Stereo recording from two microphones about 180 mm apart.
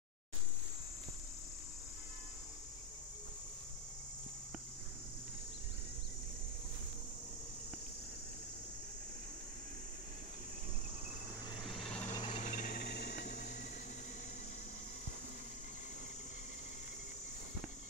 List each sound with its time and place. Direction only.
11.6 s a sound: centre (ahead or behind)
12.1 s cricket: 25° left (ahead or behind)
12.4 s cricket: 45° left (ahead or behind); by 13.4 s 60° left (ahead or behind)